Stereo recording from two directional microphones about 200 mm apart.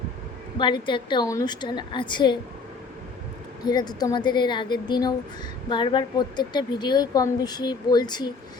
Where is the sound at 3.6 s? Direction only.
20° left (ahead or behind).